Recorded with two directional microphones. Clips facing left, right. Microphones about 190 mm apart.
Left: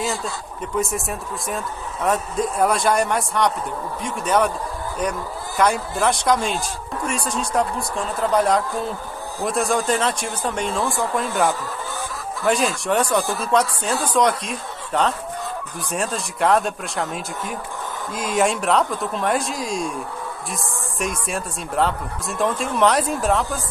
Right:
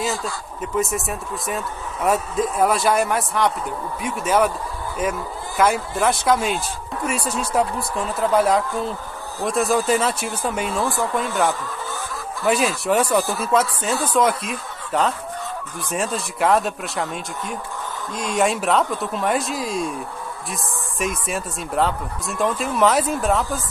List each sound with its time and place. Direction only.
0.0 s speech: centre (ahead or behind)
5.6 s speech: 5° right (ahead or behind)
12.4 s speech: 5° right (ahead or behind)